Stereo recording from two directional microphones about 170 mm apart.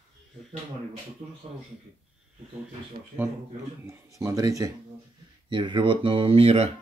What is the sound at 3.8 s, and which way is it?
Speech, 15° right (ahead or behind).